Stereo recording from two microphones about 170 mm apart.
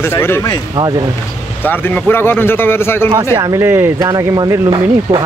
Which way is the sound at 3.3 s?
20° right (ahead or behind).